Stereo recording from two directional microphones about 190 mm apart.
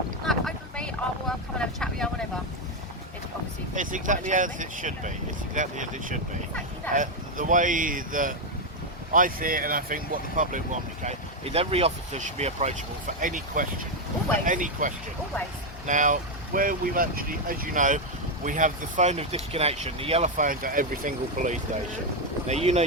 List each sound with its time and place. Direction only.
0.3 s vehicle: 5° left (ahead or behind)
3.8 s speech: 45° right (ahead or behind)